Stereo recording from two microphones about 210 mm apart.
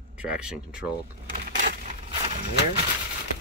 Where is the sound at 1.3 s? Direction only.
40° right (ahead or behind).